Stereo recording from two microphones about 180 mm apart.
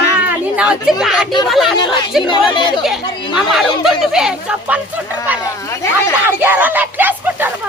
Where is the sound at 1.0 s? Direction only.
Centre (ahead or behind).